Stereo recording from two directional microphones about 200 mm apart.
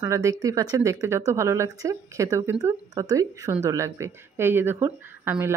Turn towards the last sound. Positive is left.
turn(degrees=-10)  # may be behind; listen again after turning